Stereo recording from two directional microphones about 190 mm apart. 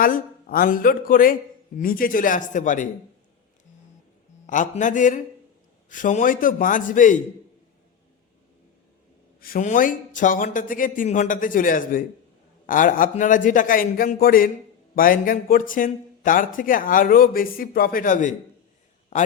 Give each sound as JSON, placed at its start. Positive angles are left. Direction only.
{"t": 0.0, "sound": "speech", "side_deg": 45}
{"t": 4.4, "sound": "a man's voice", "side_deg": 40}
{"t": 9.4, "sound": "speech", "side_deg": 45}